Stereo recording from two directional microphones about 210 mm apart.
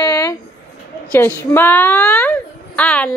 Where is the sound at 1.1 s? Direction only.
10° left (ahead or behind).